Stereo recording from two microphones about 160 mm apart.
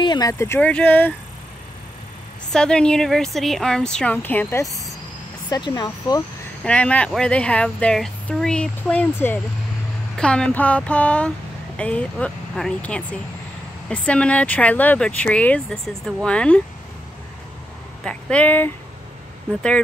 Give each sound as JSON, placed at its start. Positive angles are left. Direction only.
{"t": 0.0, "sound": "speech", "side_deg": 25}
{"t": 2.5, "sound": "a woman's voice", "side_deg": 5}
{"t": 6.6, "sound": "speech", "side_deg": 10}
{"t": 18.0, "sound": "speech", "side_deg": 10}